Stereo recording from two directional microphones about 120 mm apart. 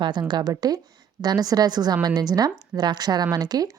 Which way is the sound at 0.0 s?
40° right (ahead or behind).